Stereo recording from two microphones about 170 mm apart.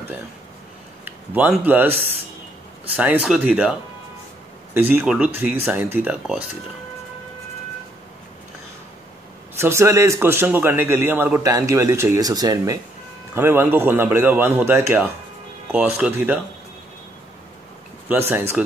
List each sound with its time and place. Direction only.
1.0 s a man's voice: 10° right (ahead or behind)
4.7 s a man's voice: 10° right (ahead or behind)
9.6 s a man's voice: 15° right (ahead or behind)
18.0 s a man's voice: 10° right (ahead or behind)